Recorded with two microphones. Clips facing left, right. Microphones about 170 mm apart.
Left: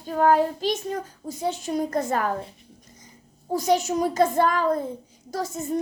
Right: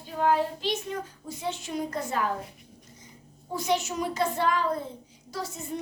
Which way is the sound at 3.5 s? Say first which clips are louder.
Left 6 dB; 40° left (ahead or behind).